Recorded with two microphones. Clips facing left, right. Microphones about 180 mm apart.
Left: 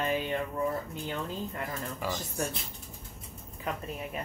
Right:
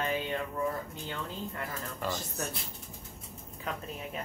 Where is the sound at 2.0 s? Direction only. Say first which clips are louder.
Left 1 dB; 10° left (ahead or behind).